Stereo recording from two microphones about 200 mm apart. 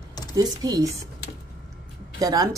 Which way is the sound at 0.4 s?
20° right (ahead or behind).